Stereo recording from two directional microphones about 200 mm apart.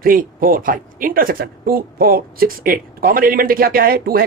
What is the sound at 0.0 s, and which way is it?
Speech, 45° right (ahead or behind).